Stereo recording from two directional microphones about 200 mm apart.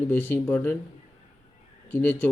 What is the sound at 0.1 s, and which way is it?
Speech, 10° left (ahead or behind).